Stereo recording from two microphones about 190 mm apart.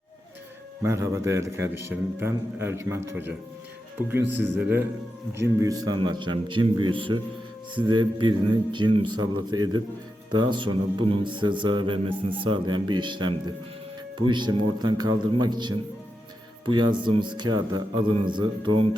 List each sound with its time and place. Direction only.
0.8 s a man's voice: 15° right (ahead or behind)